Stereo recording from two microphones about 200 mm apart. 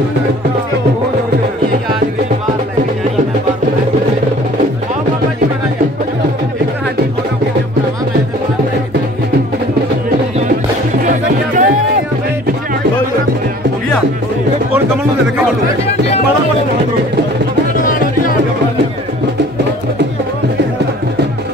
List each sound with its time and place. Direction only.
11.1 s music: 40° right (ahead or behind)